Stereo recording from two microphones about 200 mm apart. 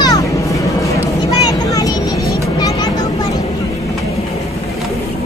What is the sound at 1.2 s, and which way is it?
Vehicle, 20° left (ahead or behind).